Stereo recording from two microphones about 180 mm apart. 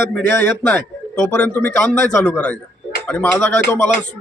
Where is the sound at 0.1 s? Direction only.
10° left (ahead or behind).